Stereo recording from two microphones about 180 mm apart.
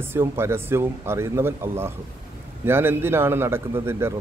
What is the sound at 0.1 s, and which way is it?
A man's voice, 15° right (ahead or behind).